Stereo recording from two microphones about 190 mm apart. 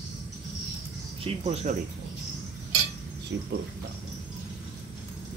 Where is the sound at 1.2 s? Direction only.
35° right (ahead or behind).